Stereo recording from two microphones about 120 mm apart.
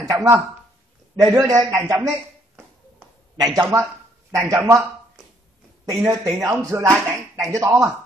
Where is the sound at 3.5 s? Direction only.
25° right (ahead or behind).